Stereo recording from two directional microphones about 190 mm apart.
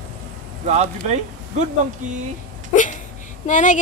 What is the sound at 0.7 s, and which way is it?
Speech, 35° right (ahead or behind).